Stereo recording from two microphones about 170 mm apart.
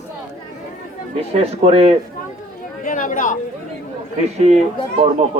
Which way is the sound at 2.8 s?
50° left (ahead or behind).